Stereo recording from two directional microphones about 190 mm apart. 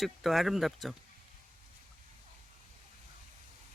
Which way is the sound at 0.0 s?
Centre (ahead or behind).